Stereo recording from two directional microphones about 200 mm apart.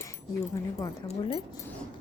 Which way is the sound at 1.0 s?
25° left (ahead or behind).